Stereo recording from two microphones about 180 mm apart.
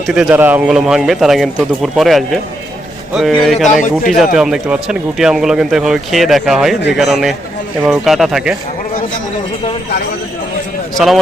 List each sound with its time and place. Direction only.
0.1 s speech: 5° right (ahead or behind)
3.7 s speech: 45° left (ahead or behind)
4.4 s speech: 5° right (ahead or behind)
10.9 s speech: centre (ahead or behind)